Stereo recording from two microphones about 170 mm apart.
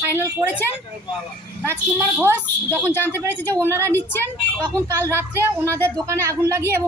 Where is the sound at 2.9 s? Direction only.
15° left (ahead or behind).